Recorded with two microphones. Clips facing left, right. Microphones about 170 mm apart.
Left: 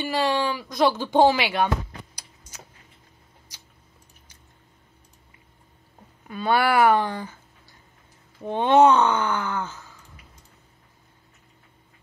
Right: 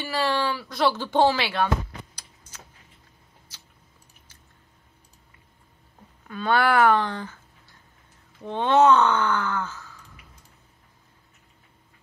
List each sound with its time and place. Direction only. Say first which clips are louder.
0.0 s speech: left 2 dB; 15° left (ahead or behind)
6.2 s speech: even; 10° left (ahead or behind)
8.4 s speech: left 2 dB; 15° left (ahead or behind)